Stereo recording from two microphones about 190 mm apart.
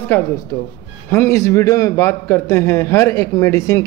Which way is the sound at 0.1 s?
10° left (ahead or behind).